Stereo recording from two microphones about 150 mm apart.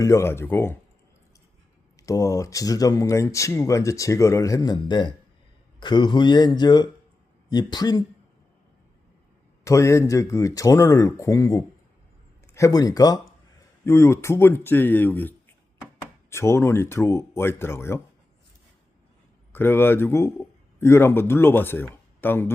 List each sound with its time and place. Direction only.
0.0 s speech: 20° left (ahead or behind)
2.0 s speech: 20° left (ahead or behind)
9.6 s speech: 20° left (ahead or behind)
19.5 s a man's voice: 15° left (ahead or behind)